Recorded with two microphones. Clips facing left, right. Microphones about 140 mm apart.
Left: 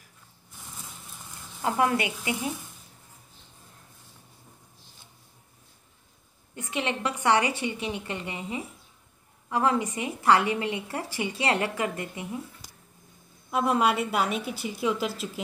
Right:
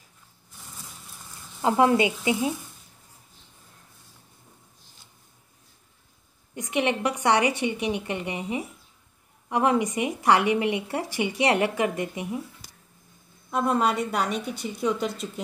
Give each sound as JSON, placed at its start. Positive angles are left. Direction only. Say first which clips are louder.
{"t": 1.6, "sound": "speech", "louder": "right 5 dB", "side_deg": -20}
{"t": 6.5, "sound": "speech", "louder": "right 5 dB", "side_deg": -15}
{"t": 13.5, "sound": "a woman's voice", "louder": "even", "side_deg": 5}